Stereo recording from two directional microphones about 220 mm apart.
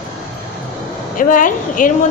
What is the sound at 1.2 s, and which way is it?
Speech, 35° left (ahead or behind).